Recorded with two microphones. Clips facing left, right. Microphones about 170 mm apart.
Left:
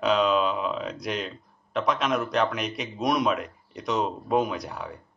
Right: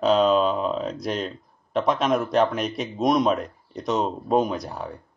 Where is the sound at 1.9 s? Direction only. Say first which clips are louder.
Right 4 dB; 45° right (ahead or behind).